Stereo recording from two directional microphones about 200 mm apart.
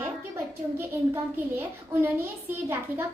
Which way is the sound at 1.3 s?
10° right (ahead or behind).